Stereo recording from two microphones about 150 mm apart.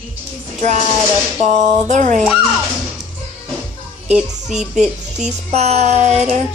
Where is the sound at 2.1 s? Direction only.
5° right (ahead or behind).